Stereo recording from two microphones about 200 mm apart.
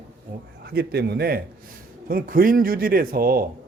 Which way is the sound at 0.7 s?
50° right (ahead or behind).